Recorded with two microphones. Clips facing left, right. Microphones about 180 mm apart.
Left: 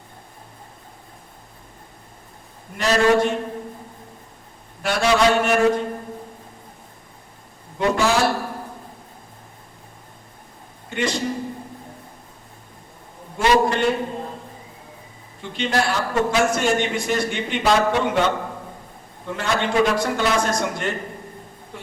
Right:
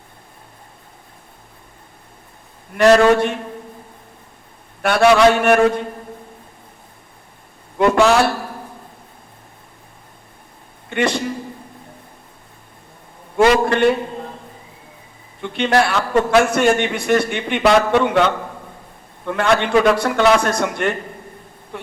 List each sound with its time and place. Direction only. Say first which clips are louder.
2.7 s a man's voice: right 6 dB; 60° right (ahead or behind)
4.8 s a man's voice: right 6 dB; 60° right (ahead or behind)
7.8 s a man's voice: right 5 dB; 65° right (ahead or behind)
10.8 s a sound: right 5 dB; 60° right (ahead or behind)
13.3 s a man's voice: right 4 dB; 60° right (ahead or behind)
15.4 s a man's voice: right 6 dB; 65° right (ahead or behind)